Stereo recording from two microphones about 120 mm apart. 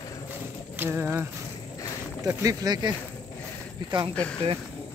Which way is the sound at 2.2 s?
30° right (ahead or behind).